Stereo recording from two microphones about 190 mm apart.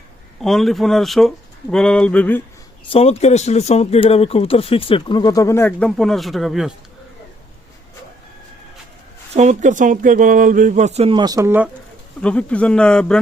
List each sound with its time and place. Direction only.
0.4 s speech: centre (ahead or behind)
2.9 s speech: 35° left (ahead or behind); by 6.7 s centre (ahead or behind)
9.3 s speech: 40° right (ahead or behind); by 11.7 s 10° right (ahead or behind)
12.2 s speech: 5° left (ahead or behind)